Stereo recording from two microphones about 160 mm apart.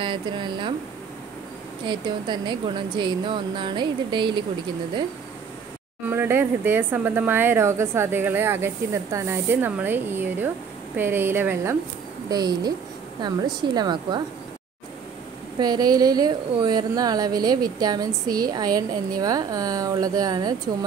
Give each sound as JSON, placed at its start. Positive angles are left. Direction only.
{"t": 0.0, "sound": "speech", "side_deg": -30}
{"t": 1.9, "sound": "a woman's voice", "side_deg": -30}
{"t": 6.0, "sound": "speech", "side_deg": -15}
{"t": 12.3, "sound": "a woman's voice", "side_deg": -25}
{"t": 15.6, "sound": "a woman's voice", "side_deg": -25}